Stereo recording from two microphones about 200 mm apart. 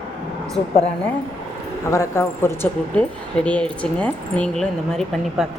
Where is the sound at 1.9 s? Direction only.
15° left (ahead or behind).